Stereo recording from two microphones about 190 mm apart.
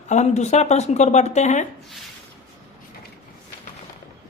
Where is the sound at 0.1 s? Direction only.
35° left (ahead or behind).